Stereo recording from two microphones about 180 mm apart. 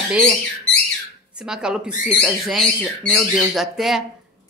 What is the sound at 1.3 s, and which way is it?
Speech, 5° right (ahead or behind).